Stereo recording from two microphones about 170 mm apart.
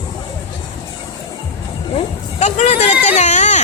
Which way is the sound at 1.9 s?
40° left (ahead or behind).